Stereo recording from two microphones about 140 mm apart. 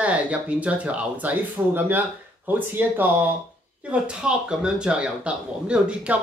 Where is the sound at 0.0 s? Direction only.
10° right (ahead or behind).